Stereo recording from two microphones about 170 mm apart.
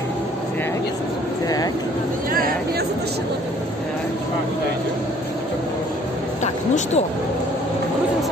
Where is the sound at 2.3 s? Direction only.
60° right (ahead or behind).